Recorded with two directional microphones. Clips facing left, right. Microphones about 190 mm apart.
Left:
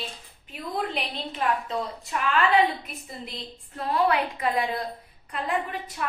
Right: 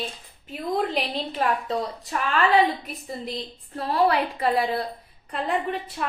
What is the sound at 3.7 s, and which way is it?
A woman's voice, 35° right (ahead or behind).